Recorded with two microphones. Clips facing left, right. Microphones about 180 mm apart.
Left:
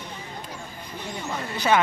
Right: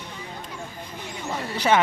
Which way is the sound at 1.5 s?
30° right (ahead or behind).